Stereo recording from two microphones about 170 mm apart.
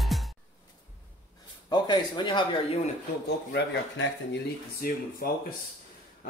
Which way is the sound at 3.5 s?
90° left.